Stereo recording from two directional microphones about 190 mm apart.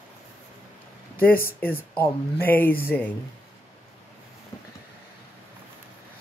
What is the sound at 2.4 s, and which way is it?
Speech, 10° left (ahead or behind).